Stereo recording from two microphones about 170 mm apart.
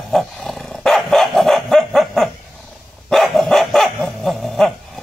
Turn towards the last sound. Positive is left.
turn(degrees=0)  # may be behind; listen again after turning